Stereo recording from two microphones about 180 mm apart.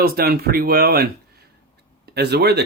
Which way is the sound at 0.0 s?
60° right (ahead or behind).